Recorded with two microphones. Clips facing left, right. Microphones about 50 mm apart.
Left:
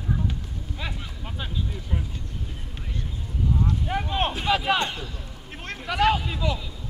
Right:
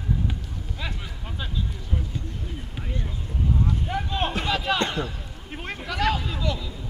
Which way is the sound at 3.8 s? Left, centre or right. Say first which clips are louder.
Left 1 dB; left.